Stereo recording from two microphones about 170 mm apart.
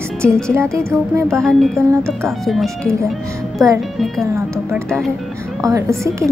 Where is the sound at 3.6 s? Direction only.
20° right (ahead or behind).